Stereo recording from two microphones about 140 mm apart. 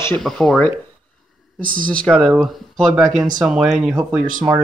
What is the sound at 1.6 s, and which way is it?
Speech, 80° right.